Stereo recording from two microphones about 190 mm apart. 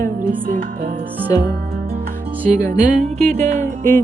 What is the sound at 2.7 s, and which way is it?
Music, 40° right (ahead or behind).